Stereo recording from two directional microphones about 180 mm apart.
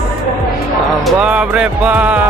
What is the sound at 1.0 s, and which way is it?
Music, 5° right (ahead or behind).